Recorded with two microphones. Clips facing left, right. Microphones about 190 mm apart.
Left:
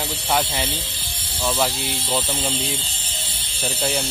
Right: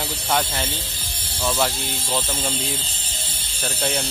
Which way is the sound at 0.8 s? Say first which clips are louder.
Even; 45° right (ahead or behind).